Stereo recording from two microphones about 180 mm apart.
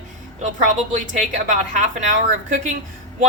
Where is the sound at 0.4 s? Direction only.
45° right (ahead or behind).